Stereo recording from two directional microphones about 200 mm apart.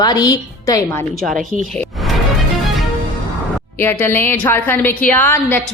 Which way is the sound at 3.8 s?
10° left (ahead or behind).